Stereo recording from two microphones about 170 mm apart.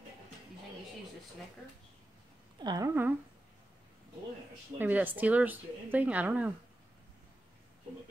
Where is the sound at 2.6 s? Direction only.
25° right (ahead or behind).